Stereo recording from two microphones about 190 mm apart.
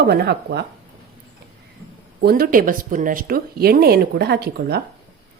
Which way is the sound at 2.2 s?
55° right (ahead or behind).